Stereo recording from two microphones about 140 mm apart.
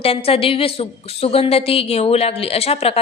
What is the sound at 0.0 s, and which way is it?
A woman's voice, 45° left (ahead or behind).